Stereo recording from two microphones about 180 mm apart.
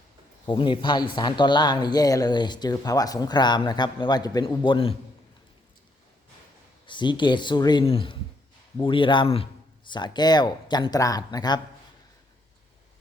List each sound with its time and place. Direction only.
0.4 s speech: 25° left (ahead or behind)
6.8 s speech: 25° left (ahead or behind)